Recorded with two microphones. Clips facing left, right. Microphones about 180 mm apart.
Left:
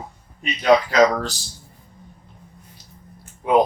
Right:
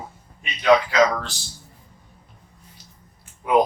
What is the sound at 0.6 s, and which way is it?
Speech, 40° left (ahead or behind).